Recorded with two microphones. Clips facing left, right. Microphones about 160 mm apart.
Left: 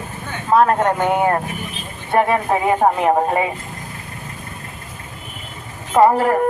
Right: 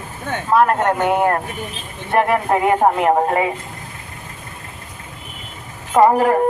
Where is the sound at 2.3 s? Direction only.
5° left (ahead or behind).